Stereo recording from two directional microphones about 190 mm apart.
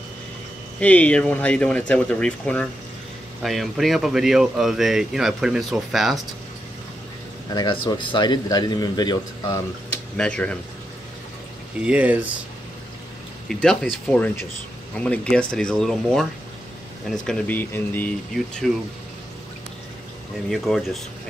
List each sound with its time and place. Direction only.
0.7 s speech: 5° left (ahead or behind)
7.5 s a man's voice: 25° left (ahead or behind)
10.1 s speech: 5° left (ahead or behind)
11.8 s speech: 5° right (ahead or behind)
13.5 s speech: 5° left (ahead or behind)
18.6 s speech: centre (ahead or behind)
20.4 s speech: centre (ahead or behind)